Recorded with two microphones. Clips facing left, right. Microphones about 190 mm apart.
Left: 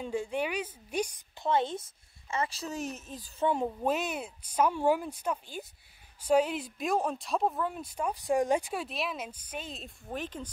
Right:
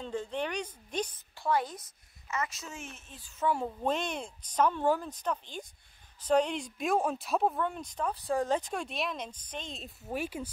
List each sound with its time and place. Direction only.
0.0 s a woman's voice: 10° left (ahead or behind); by 3.4 s 40° left (ahead or behind)
3.4 s a woman's voice: 20° left (ahead or behind)
3.8 s speech: 5° left (ahead or behind); by 10.5 s 10° right (ahead or behind)